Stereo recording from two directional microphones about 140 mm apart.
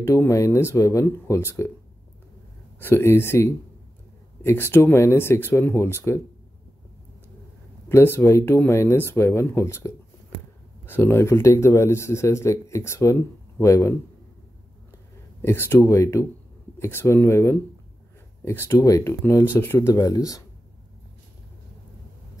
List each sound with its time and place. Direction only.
0.0 s speech: 20° left (ahead or behind)
2.8 s speech: 15° left (ahead or behind)
7.9 s speech: 15° left (ahead or behind)
15.4 s speech: 15° left (ahead or behind)